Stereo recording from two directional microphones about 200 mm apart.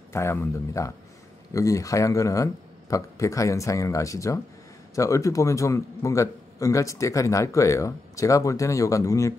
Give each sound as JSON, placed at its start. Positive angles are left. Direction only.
{"t": 0.1, "sound": "a man's voice", "side_deg": 15}